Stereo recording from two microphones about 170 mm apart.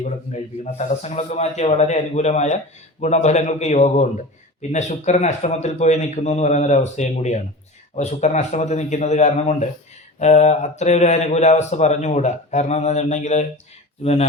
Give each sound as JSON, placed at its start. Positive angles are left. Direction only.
{"t": 0.6, "sound": "a man's voice", "side_deg": 45}